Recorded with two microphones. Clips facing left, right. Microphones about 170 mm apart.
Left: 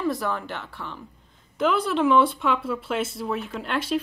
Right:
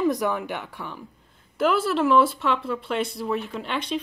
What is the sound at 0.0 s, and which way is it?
Speech, 15° right (ahead or behind).